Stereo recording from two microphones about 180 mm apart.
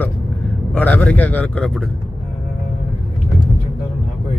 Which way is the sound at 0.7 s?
10° left (ahead or behind).